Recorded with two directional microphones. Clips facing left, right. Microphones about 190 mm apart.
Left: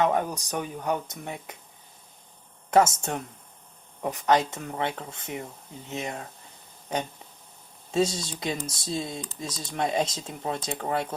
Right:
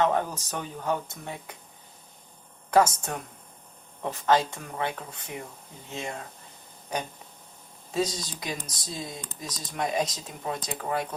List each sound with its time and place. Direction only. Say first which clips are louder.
0.0 s speech: left 1 dB; 15° left (ahead or behind)
2.6 s speech: left 1 dB; 25° left (ahead or behind)
7.9 s speech: left 3 dB; 25° left (ahead or behind)